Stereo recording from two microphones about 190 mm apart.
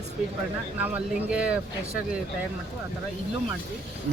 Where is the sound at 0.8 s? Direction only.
5° right (ahead or behind).